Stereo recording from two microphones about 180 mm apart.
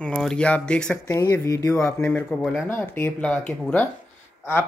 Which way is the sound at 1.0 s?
20° left (ahead or behind).